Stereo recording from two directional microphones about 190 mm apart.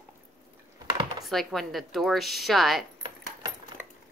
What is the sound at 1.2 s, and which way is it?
A woman's voice, centre (ahead or behind).